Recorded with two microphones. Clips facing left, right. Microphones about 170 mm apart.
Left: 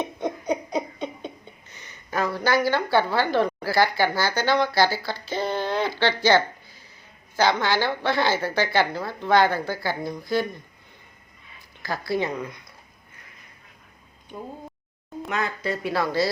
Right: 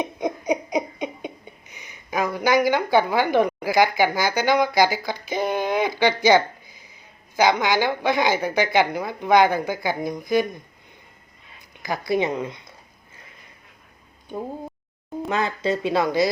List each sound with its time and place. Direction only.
0.0 s a sound: 15° right (ahead or behind)
7.3 s a woman's voice: 15° right (ahead or behind)
11.8 s speech: 15° right (ahead or behind)
15.3 s speech: 30° right (ahead or behind)